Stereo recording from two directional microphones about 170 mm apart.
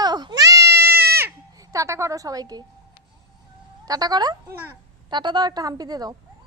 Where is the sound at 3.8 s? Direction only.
20° right (ahead or behind).